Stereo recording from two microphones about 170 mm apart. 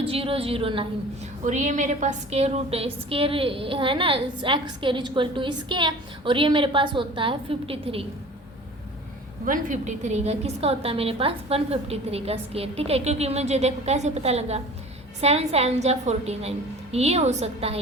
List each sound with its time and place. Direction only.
0.0 s a woman's voice: 35° right (ahead or behind)
1.5 s a woman's voice: 45° right (ahead or behind)
9.5 s a woman's voice: 45° right (ahead or behind)